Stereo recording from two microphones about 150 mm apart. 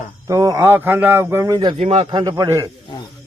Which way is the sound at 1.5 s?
30° right (ahead or behind).